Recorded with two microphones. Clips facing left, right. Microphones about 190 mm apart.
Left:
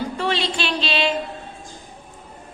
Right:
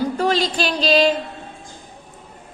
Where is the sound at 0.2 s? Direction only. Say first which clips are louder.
Right 2 dB; 40° right (ahead or behind).